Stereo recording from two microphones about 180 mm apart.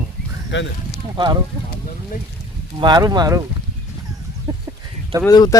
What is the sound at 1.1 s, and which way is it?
Speech, 25° right (ahead or behind).